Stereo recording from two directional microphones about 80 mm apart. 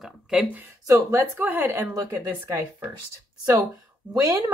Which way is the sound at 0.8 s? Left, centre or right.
Right.